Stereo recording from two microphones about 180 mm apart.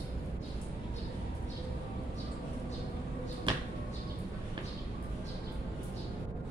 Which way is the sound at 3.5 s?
25° right (ahead or behind).